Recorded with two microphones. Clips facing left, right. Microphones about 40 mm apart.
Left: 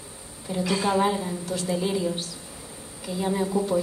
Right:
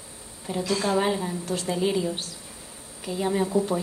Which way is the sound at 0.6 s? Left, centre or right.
Centre.